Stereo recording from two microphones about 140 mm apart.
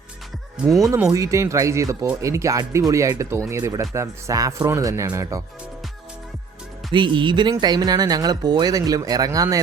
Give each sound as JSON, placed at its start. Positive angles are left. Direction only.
{"t": 0.8, "sound": "speech", "side_deg": -25}
{"t": 6.9, "sound": "speech", "side_deg": -35}